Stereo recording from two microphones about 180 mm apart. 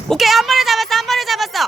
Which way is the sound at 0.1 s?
Centre (ahead or behind).